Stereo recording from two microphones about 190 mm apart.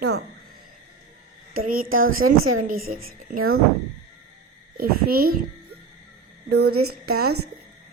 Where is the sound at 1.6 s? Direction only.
50° right (ahead or behind).